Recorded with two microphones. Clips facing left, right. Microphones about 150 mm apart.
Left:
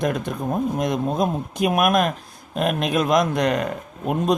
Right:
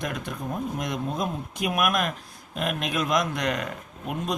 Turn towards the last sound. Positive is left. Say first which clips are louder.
# left 9 dB
turn(degrees=40)  # may be behind; listen again after turning